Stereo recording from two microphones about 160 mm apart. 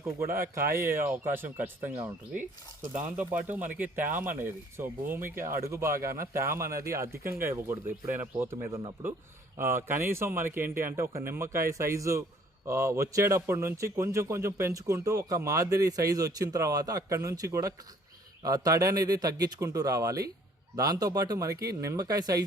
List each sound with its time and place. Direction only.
0.3 s speech: 65° right (ahead or behind)
0.8 s a man's voice: 15° right (ahead or behind)
9.6 s a man's voice: 15° right (ahead or behind)